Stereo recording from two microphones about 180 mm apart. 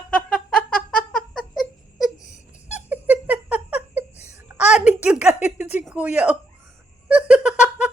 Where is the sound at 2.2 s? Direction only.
40° left (ahead or behind).